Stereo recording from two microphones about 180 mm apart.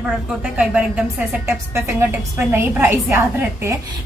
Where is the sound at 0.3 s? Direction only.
5° right (ahead or behind).